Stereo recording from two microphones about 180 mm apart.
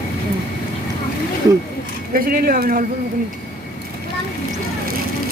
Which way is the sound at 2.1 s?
55° right (ahead or behind).